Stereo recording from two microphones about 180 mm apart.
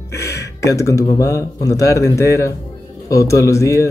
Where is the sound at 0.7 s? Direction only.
15° left (ahead or behind).